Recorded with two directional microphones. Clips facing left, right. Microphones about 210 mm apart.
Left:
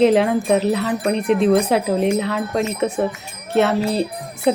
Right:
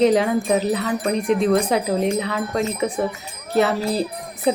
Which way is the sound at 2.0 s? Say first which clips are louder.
Left 2 dB; 30° left (ahead or behind).